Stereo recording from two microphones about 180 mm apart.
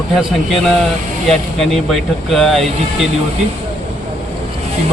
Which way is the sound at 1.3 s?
Centre (ahead or behind).